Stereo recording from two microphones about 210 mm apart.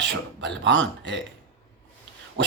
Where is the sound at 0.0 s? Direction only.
55° right (ahead or behind).